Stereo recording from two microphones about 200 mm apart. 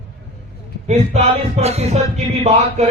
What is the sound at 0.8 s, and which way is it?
Speech, 35° right (ahead or behind).